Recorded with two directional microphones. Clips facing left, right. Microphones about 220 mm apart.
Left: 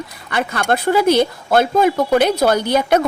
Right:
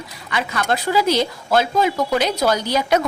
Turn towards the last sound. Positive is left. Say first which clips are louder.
# left 3 dB
turn(degrees=55)  # may be behind; listen again after turning